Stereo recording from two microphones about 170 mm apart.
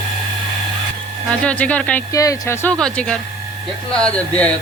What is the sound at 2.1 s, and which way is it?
Speech, 20° left (ahead or behind).